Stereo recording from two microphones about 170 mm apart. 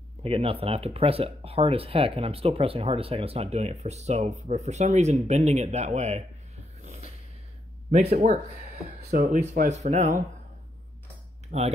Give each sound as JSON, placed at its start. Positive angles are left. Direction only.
{"t": 0.2, "sound": "speech", "side_deg": -35}
{"t": 6.8, "sound": "snort", "side_deg": -40}
{"t": 9.2, "sound": "speech", "side_deg": -40}
{"t": 11.5, "sound": "speech", "side_deg": -40}